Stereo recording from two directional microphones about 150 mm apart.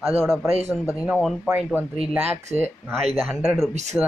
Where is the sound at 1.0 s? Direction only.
Centre (ahead or behind).